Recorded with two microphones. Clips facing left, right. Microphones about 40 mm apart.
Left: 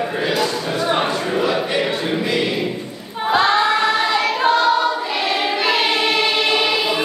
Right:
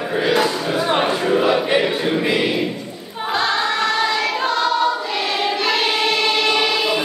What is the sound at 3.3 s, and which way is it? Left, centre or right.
Choir, centre.